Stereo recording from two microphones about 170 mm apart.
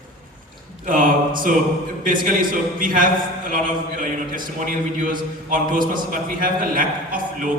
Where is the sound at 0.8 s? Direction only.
55° right (ahead or behind).